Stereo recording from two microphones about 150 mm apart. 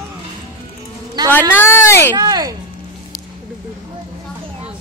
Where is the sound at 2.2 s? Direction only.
25° right (ahead or behind).